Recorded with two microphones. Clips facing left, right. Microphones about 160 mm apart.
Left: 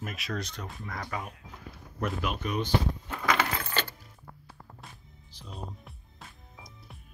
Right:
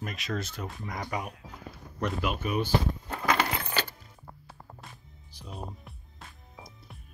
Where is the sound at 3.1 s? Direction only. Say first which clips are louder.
Right 1 dB; 30° right (ahead or behind).